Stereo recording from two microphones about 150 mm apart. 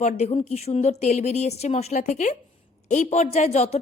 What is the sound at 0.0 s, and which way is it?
Speech, 50° left (ahead or behind).